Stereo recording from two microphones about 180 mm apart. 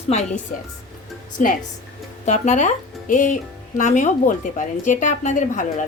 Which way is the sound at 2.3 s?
40° left (ahead or behind).